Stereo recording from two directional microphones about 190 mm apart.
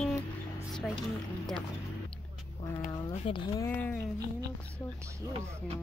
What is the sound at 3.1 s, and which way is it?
Speech, 30° left (ahead or behind).